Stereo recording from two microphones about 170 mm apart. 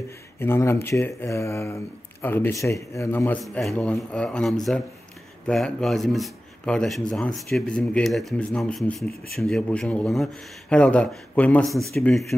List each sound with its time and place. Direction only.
0.4 s speech: 15° left (ahead or behind)
3.4 s speech: 5° left (ahead or behind)